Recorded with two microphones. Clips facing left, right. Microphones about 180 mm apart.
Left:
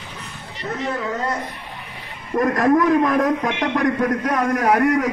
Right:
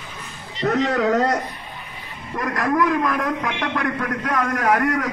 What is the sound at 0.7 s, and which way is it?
Speech, 75° right (ahead or behind).